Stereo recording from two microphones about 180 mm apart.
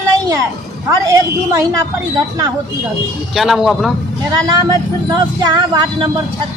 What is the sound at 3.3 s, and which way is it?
Speech, centre (ahead or behind).